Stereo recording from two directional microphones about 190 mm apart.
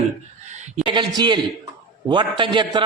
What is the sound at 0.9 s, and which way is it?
A man's voice, 25° right (ahead or behind).